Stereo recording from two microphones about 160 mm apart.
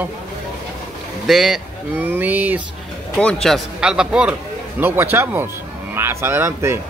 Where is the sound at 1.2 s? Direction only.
Centre (ahead or behind).